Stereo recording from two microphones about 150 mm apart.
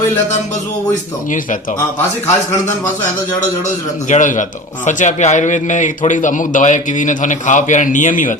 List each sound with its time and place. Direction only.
4.1 s a man's voice: 55° left (ahead or behind)